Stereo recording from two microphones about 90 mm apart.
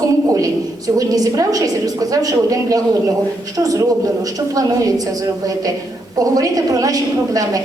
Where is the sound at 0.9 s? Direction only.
40° right (ahead or behind).